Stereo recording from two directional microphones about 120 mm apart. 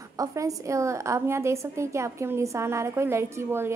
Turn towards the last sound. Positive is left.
turn(degrees=-20)  # may be behind; listen again after turning